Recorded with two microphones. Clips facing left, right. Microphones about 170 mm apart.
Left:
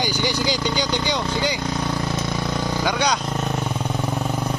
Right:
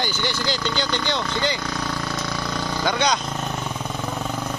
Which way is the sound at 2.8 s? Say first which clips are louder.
Right 1 dB; 10° left (ahead or behind).